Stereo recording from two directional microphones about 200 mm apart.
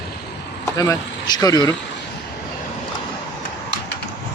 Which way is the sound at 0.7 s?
15° left (ahead or behind).